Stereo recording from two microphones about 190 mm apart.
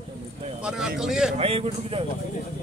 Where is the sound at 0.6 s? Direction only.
5° right (ahead or behind).